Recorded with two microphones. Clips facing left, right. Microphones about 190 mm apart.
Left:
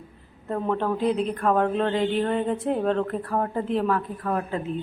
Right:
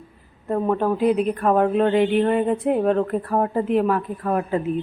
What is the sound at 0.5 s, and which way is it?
A woman's voice, 15° right (ahead or behind).